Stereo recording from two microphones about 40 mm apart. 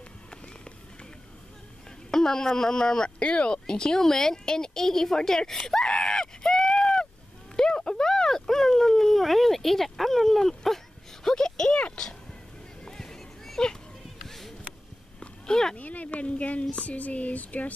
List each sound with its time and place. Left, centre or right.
2.0 s speech: centre
5.9 s screaming: centre
7.5 s a sound: centre
12.8 s horse: centre
14.2 s a sound: centre
15.7 s speech: left